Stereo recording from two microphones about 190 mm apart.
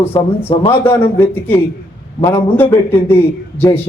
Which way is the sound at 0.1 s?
30° left (ahead or behind).